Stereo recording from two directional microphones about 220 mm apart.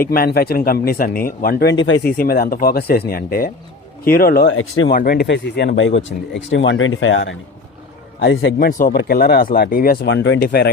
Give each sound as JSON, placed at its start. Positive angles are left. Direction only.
{"t": 0.0, "sound": "a man's voice", "side_deg": 40}
{"t": 1.8, "sound": "speech", "side_deg": 55}
{"t": 2.1, "sound": "a man's voice", "side_deg": 40}
{"t": 4.5, "sound": "speech", "side_deg": 70}
{"t": 4.9, "sound": "a man's voice", "side_deg": 45}
{"t": 8.5, "sound": "a man's voice", "side_deg": 40}
{"t": 10.1, "sound": "a man's voice", "side_deg": 60}